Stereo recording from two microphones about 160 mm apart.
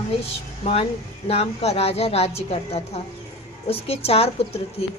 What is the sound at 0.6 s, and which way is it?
A woman's voice, 40° left (ahead or behind).